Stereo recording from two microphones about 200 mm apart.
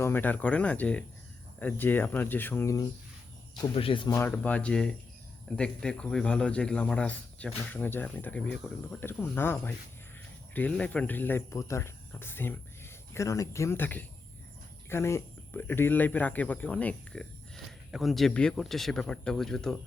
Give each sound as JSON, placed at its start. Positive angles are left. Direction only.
{"t": 0.0, "sound": "speech", "side_deg": 10}
{"t": 3.6, "sound": "speech", "side_deg": 25}
{"t": 4.1, "sound": "speech", "side_deg": 10}